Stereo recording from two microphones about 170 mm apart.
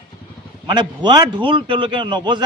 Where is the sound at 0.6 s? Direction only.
25° right (ahead or behind).